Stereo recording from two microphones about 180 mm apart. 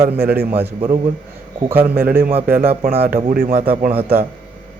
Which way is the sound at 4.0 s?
10° right (ahead or behind).